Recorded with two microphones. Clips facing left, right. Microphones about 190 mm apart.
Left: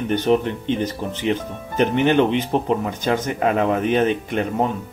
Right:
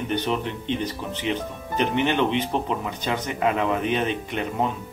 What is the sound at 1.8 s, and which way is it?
Speech, 45° left (ahead or behind).